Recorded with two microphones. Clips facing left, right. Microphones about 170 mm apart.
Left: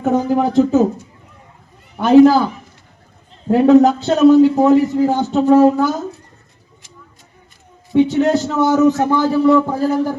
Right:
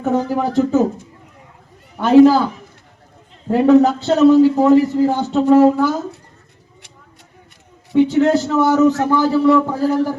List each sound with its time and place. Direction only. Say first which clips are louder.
0.0 s a man's voice: left 2 dB; 15° left (ahead or behind)
2.0 s a man's voice: left 1 dB; 15° left (ahead or behind)
3.5 s a man's voice: left 2 dB; 15° left (ahead or behind)
7.9 s a man's voice: even; 20° left (ahead or behind)